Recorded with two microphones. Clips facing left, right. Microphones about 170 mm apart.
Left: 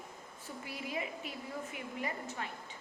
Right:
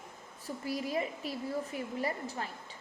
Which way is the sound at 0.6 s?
40° right (ahead or behind).